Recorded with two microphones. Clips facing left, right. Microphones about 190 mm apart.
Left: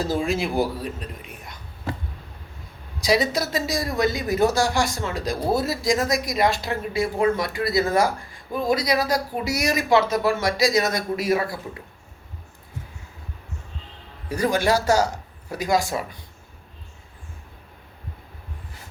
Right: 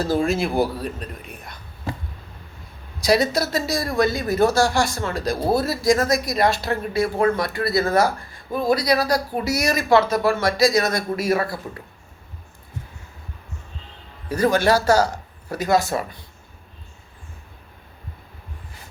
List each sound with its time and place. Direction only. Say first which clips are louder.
0.3 s speech: right 2 dB; 15° left (ahead or behind)
3.0 s speech: right 2 dB; 15° left (ahead or behind)
14.3 s speech: right 3 dB; 15° left (ahead or behind)